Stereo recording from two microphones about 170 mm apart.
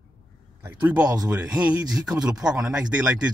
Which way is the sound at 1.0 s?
20° right (ahead or behind).